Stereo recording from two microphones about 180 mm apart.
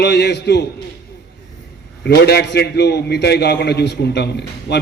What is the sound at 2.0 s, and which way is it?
A man's voice, 65° left (ahead or behind).